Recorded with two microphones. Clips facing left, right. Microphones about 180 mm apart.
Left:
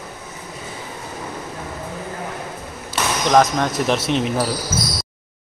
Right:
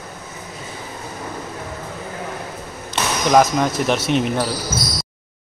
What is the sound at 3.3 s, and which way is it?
Speech, centre (ahead or behind).